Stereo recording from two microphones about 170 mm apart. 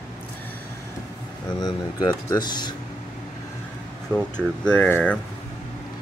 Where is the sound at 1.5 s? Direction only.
25° left (ahead or behind).